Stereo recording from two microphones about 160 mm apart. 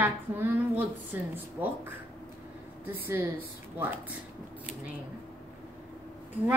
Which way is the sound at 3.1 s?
15° right (ahead or behind).